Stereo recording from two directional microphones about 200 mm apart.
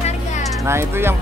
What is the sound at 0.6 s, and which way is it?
Speech, 10° right (ahead or behind).